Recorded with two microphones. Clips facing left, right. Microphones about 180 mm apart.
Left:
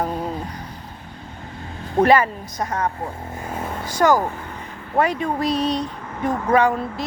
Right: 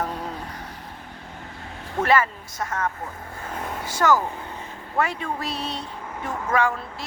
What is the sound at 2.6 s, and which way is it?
Speech, 35° left (ahead or behind).